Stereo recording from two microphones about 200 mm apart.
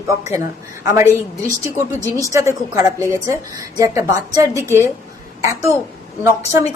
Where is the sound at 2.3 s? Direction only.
15° right (ahead or behind).